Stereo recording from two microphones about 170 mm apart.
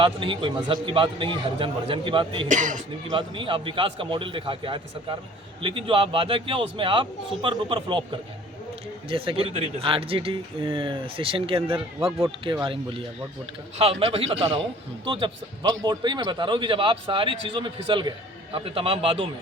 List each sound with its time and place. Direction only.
0.0 s speech: 30° right (ahead or behind)
2.5 s speech: 45° right (ahead or behind)
3.1 s a man's voice: 30° right (ahead or behind)
9.0 s speech: 30° right (ahead or behind)
12.2 s a man's voice: 20° right (ahead or behind)
12.6 s a man's voice: 30° right (ahead or behind)